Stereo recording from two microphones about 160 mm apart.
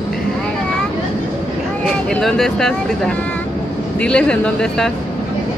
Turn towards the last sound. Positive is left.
turn(degrees=5)  # may be behind; listen again after turning